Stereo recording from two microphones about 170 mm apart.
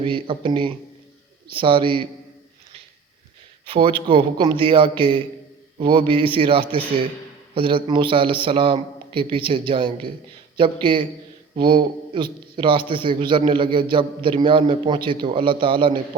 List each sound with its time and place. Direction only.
0.0 s a man's voice: 30° right (ahead or behind)
3.7 s a man's voice: 30° right (ahead or behind)